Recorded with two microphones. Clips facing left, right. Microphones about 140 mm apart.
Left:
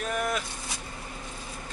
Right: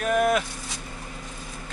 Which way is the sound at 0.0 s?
70° right (ahead or behind).